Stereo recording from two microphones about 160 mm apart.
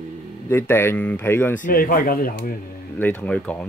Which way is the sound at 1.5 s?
60° left (ahead or behind).